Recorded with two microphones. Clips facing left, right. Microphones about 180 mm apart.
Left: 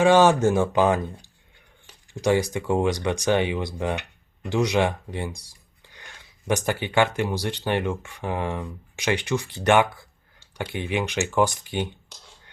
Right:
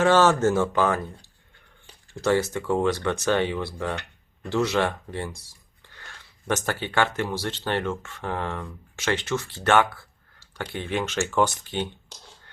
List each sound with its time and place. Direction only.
0.0 s speech: 15° left (ahead or behind)